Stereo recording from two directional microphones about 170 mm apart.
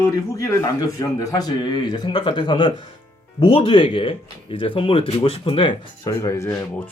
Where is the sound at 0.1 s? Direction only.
20° left (ahead or behind).